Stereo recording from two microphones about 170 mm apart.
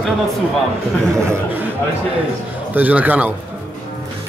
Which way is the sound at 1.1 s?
15° right (ahead or behind).